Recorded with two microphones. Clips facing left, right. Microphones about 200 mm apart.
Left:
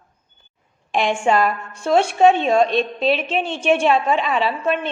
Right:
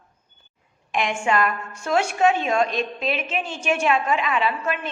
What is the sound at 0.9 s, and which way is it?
A woman's voice, 30° left (ahead or behind).